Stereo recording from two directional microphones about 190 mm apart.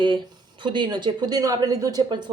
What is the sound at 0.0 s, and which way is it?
A woman's voice, 25° right (ahead or behind).